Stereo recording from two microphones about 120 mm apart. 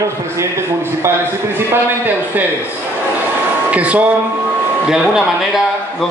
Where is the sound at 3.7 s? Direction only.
10° right (ahead or behind).